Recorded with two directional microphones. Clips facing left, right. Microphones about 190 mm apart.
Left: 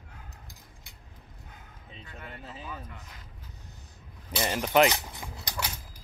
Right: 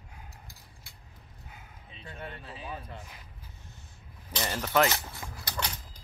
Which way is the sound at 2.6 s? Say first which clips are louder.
Right 5 dB; 30° right (ahead or behind).